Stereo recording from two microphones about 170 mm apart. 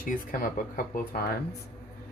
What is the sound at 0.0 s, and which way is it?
Speech, 55° left (ahead or behind).